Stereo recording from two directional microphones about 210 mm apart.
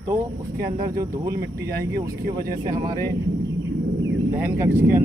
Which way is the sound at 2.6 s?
20° right (ahead or behind).